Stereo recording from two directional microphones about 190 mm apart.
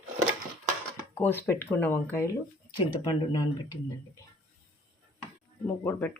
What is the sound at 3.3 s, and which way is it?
Speech, 20° left (ahead or behind).